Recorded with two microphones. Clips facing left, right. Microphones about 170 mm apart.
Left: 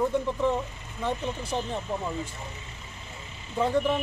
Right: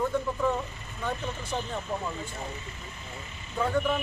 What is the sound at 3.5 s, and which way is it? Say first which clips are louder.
Speech: left 3 dB; 30° left (ahead or behind).